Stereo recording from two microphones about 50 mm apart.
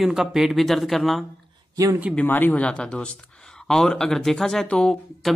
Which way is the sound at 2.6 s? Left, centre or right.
Left.